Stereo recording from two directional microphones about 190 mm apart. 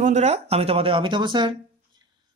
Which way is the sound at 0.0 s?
35° right (ahead or behind).